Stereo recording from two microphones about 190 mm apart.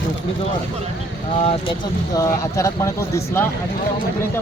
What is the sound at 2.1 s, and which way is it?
Speech, 15° left (ahead or behind).